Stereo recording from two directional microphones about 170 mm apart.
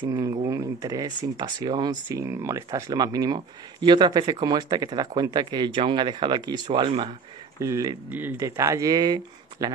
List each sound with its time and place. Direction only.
0.0 s speech: 20° right (ahead or behind)
7.6 s speech: 20° right (ahead or behind)